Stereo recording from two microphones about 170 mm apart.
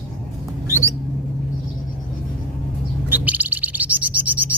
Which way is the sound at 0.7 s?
15° right (ahead or behind).